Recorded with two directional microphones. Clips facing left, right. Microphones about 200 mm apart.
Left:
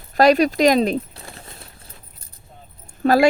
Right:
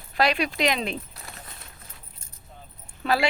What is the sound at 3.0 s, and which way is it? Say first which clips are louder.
Speech: left 9 dB; 45° left (ahead or behind).